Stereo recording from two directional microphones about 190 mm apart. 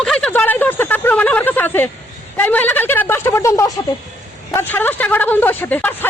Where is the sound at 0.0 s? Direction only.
5° left (ahead or behind).